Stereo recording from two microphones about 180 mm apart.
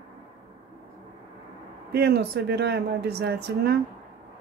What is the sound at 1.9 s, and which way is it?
Speech, 65° right (ahead or behind).